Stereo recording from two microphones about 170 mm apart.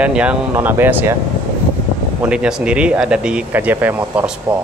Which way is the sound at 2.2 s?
5° right (ahead or behind).